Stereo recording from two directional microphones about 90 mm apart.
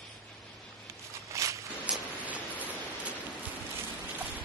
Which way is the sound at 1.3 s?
35° right (ahead or behind).